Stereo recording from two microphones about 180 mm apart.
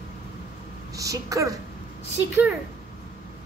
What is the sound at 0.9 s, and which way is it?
Speech, 20° right (ahead or behind).